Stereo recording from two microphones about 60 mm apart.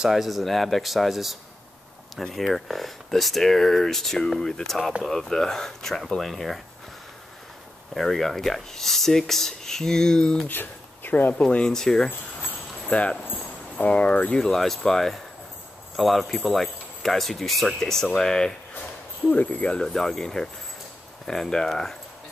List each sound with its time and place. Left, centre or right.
0.0 s speech: centre
7.9 s speech: centre
10.5 s speech: left
11.4 s speech: centre
12.8 s speech: left
13.2 s a sound: left
14.3 s speech: centre
19.2 s speech: left; by 21.9 s centre